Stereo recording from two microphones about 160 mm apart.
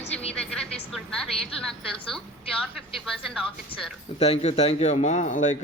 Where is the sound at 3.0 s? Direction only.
Centre (ahead or behind).